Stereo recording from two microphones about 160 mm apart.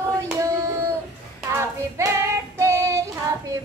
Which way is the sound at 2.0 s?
15° right (ahead or behind).